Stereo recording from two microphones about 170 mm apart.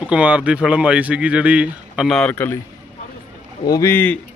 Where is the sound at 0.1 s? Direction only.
5° right (ahead or behind); by 2.6 s 10° left (ahead or behind).